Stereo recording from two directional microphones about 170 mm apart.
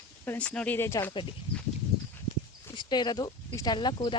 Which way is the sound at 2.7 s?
25° left (ahead or behind).